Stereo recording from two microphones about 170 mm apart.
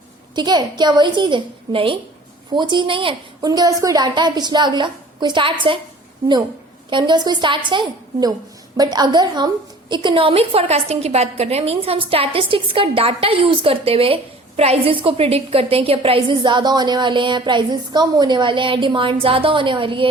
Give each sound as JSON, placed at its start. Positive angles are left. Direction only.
{"t": 0.3, "sound": "a woman's voice", "side_deg": -25}
{"t": 6.9, "sound": "a woman's voice", "side_deg": -25}